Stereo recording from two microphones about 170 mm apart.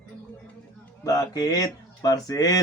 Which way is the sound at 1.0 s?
20° left (ahead or behind).